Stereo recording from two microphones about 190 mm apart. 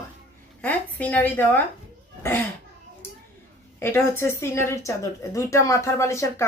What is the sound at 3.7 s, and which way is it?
Speech, 10° left (ahead or behind).